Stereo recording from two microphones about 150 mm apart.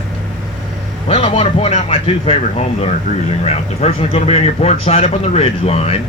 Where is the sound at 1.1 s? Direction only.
35° left (ahead or behind).